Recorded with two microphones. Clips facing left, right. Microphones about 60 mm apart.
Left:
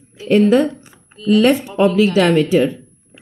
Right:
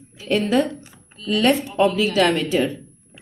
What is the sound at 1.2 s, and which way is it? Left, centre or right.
A woman's voice, left.